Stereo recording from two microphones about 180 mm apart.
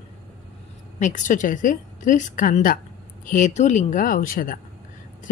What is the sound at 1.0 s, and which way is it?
A woman's voice, 45° left (ahead or behind).